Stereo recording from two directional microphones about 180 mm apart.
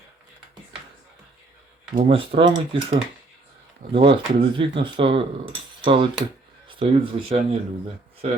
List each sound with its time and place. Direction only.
2.0 s speech: 30° right (ahead or behind)